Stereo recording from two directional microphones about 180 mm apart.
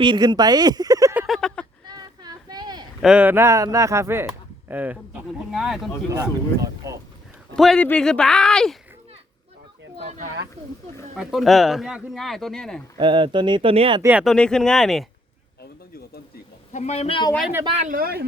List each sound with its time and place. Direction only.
0.0 s speech: 25° right (ahead or behind)
1.3 s a sound: 5° left (ahead or behind)
1.9 s a sound: 20° right (ahead or behind)
3.0 s speech: 5° right (ahead or behind)
4.3 s a sound: 10° right (ahead or behind)
5.5 s speech: centre (ahead or behind)
6.1 s speech: 15° right (ahead or behind)
7.5 s speech: 5° left (ahead or behind)
11.2 s speech: centre (ahead or behind)
13.0 s speech: 30° right (ahead or behind)
14.0 s speech: 5° right (ahead or behind)
16.7 s speech: 40° left (ahead or behind)
17.8 s speech: 55° right (ahead or behind)